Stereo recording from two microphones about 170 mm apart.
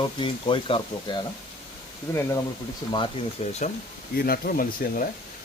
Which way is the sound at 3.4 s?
45° left (ahead or behind).